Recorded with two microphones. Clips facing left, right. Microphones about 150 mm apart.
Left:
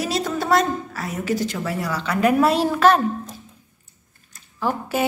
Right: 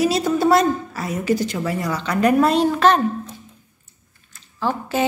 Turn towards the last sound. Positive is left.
turn(degrees=10)  # may be behind; listen again after turning